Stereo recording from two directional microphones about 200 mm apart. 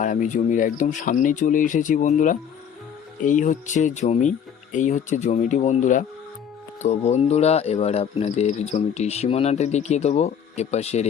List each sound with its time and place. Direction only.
0.0 s speech: 40° left (ahead or behind)